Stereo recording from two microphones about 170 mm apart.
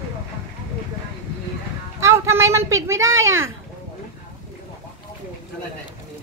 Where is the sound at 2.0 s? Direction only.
15° right (ahead or behind).